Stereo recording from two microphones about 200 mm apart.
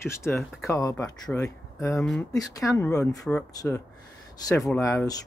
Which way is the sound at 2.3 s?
15° left (ahead or behind).